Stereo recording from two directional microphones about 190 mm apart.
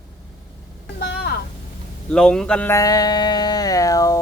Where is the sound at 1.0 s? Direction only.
60° left (ahead or behind).